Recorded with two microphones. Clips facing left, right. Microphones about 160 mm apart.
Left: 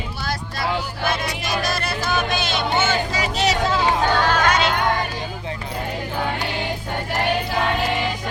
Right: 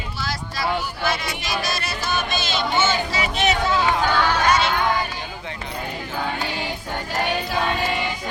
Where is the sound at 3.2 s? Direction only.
35° left (ahead or behind).